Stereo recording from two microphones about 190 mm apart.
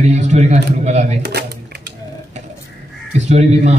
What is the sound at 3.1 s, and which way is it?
Speech, 35° right (ahead or behind).